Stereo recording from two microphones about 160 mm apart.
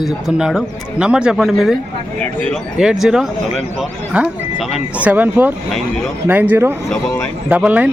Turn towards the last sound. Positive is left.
turn(degrees=-10)  # may be behind; listen again after turning